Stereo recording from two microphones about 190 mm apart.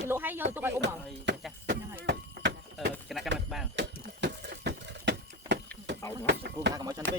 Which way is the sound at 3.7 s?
65° right (ahead or behind).